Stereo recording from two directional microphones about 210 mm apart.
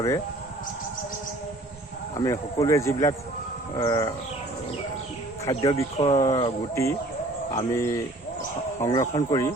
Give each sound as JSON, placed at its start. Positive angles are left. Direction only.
{"t": 2.1, "sound": "speech", "side_deg": 15}
{"t": 5.5, "sound": "speech", "side_deg": 20}
{"t": 6.0, "sound": "speech", "side_deg": 30}
{"t": 6.2, "sound": "speech", "side_deg": 15}